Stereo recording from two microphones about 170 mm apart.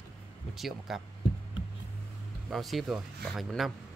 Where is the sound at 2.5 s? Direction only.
Centre (ahead or behind).